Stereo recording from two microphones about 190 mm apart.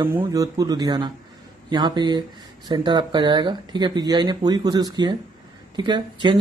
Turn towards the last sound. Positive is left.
turn(degrees=-25)  # may be behind; listen again after turning